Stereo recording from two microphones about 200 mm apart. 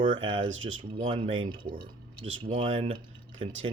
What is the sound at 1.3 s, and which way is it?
Speech, 75° right (ahead or behind).